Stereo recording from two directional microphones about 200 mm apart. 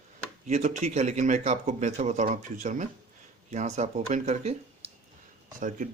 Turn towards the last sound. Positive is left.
turn(degrees=-40)  # may be behind; listen again after turning